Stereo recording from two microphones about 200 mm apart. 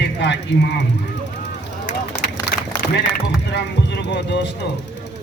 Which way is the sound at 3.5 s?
60° left (ahead or behind).